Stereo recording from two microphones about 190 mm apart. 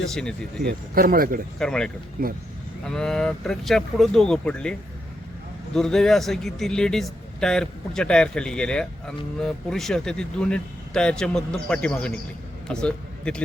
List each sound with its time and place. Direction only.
0.0 s speech: 5° left (ahead or behind)
0.6 s a man's voice: 50° right (ahead or behind)
1.5 s speech: 5° left (ahead or behind)
2.2 s a man's voice: 50° right (ahead or behind)
2.8 s speech: 5° left (ahead or behind)
5.7 s a man's voice: 5° left (ahead or behind)